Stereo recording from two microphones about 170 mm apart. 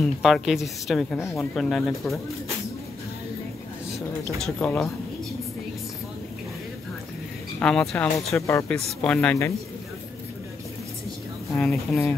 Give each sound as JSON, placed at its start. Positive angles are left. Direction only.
{"t": 0.0, "sound": "speech", "side_deg": 0}
{"t": 1.1, "sound": "speech", "side_deg": 15}
{"t": 1.5, "sound": "speech", "side_deg": 0}
{"t": 4.4, "sound": "speech", "side_deg": 5}
{"t": 7.6, "sound": "speech", "side_deg": 5}
{"t": 8.4, "sound": "speech", "side_deg": 15}
{"t": 8.7, "sound": "speech", "side_deg": 5}
{"t": 11.5, "sound": "speech", "side_deg": 0}